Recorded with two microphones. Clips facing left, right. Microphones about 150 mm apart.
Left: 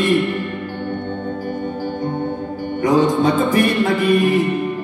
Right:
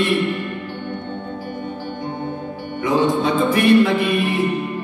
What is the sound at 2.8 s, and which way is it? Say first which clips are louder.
Music: left 3 dB; 45° left (ahead or behind).